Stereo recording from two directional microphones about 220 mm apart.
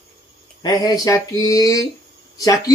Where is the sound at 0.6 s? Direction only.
20° left (ahead or behind).